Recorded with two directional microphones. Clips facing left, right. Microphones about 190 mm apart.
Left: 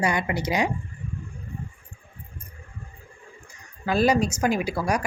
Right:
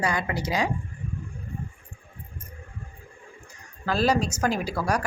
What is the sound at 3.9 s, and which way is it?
Speech, 15° left (ahead or behind).